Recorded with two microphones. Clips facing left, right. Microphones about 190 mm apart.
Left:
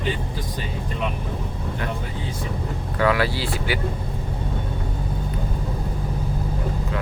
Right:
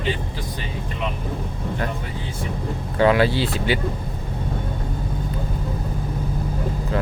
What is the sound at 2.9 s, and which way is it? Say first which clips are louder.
Speech: right 4 dB; 25° right (ahead or behind).